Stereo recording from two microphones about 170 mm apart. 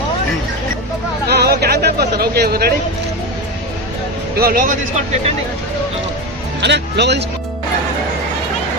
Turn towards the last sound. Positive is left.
turn(degrees=-90)